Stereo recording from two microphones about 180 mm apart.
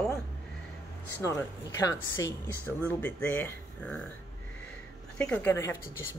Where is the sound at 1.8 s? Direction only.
15° left (ahead or behind).